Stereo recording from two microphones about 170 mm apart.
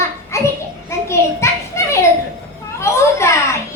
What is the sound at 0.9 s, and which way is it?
Children playing, 15° left (ahead or behind).